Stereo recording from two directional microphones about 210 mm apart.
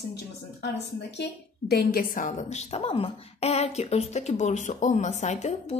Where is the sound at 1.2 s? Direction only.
50° left (ahead or behind).